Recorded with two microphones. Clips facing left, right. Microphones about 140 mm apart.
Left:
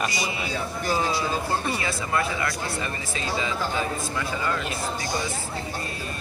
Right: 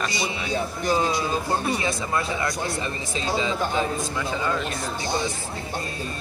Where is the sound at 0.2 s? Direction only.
20° right (ahead or behind).